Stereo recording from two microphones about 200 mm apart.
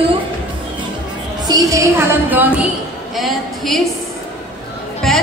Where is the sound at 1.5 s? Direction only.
15° right (ahead or behind).